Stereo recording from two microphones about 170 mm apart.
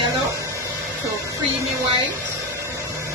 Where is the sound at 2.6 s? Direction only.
15° right (ahead or behind).